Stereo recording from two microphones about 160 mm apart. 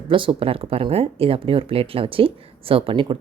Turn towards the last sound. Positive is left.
turn(degrees=-35)  # may be behind; listen again after turning